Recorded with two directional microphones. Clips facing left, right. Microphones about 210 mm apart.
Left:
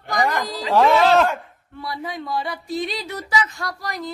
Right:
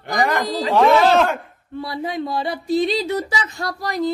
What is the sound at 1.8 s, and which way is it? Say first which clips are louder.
Speech: right 4 dB; 30° right (ahead or behind).